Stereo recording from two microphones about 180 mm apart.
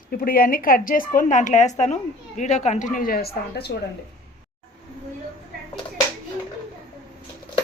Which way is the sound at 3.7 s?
65° left (ahead or behind).